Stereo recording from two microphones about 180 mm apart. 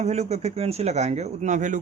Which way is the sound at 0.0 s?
40° right (ahead or behind).